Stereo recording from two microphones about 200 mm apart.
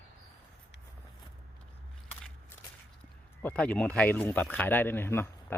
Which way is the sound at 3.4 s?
5° left (ahead or behind).